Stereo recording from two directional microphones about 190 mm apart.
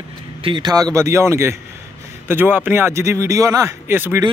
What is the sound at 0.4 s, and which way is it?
Speech, 25° right (ahead or behind).